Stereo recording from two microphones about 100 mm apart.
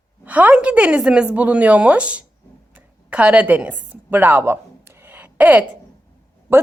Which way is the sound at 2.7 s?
10° right (ahead or behind).